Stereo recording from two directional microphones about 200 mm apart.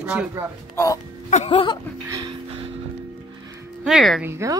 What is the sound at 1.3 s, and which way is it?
Music, 30° left (ahead or behind).